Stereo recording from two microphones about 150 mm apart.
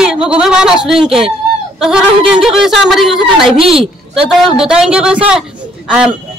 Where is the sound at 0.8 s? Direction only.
5° right (ahead or behind).